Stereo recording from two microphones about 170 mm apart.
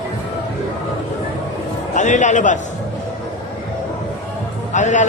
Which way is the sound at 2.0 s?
45° left (ahead or behind).